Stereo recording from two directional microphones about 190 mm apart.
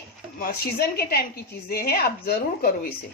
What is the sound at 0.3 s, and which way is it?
A woman's voice, 50° left (ahead or behind).